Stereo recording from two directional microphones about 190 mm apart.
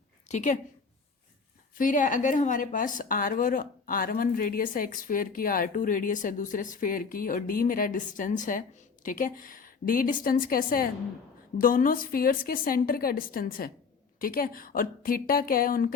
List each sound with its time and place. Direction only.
0.3 s a woman's voice: 40° left (ahead or behind)
1.8 s a woman's voice: 45° left (ahead or behind)